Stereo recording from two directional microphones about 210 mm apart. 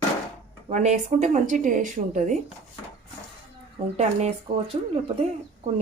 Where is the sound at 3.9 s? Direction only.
30° right (ahead or behind).